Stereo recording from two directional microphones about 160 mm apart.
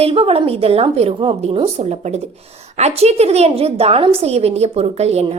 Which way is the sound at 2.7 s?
40° right (ahead or behind).